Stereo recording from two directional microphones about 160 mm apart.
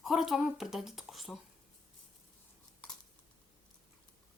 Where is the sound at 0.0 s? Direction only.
Centre (ahead or behind).